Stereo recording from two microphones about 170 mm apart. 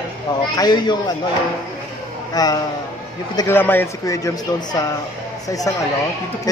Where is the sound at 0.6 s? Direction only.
25° left (ahead or behind).